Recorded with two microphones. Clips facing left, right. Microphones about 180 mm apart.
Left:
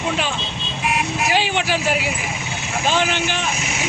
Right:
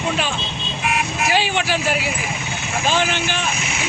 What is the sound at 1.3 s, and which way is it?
Speech, 15° left (ahead or behind).